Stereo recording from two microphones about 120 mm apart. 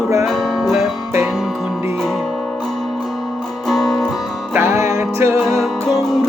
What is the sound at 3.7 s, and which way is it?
Music, centre (ahead or behind).